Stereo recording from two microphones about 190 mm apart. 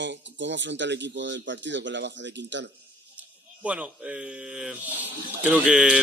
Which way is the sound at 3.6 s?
5° right (ahead or behind).